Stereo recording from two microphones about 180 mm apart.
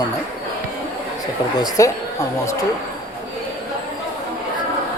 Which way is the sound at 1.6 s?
20° left (ahead or behind).